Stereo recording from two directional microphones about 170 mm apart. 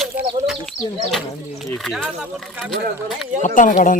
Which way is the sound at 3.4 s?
50° left (ahead or behind).